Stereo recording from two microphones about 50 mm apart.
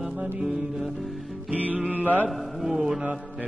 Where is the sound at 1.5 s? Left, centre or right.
Right.